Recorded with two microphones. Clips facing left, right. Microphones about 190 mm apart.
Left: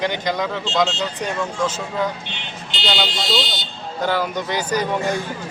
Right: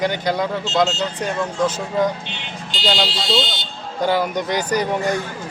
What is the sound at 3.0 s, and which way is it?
Speech, 25° right (ahead or behind).